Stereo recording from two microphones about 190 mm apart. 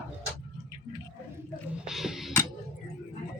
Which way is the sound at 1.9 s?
Centre (ahead or behind).